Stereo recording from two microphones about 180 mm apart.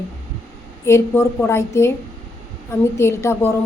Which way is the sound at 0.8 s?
15° left (ahead or behind).